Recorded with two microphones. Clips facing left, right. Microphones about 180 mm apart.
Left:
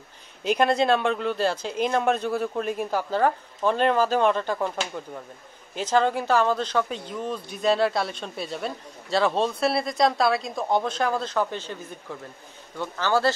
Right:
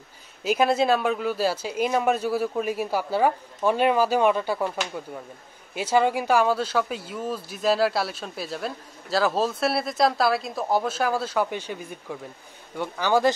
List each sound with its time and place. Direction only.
0.4 s speech: 5° right (ahead or behind)
5.8 s speech: 10° right (ahead or behind)